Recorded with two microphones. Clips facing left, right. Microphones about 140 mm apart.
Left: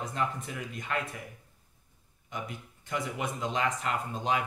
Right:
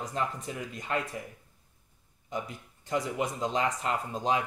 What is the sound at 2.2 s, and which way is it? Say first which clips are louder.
Speech: right 3 dB; 30° right (ahead or behind).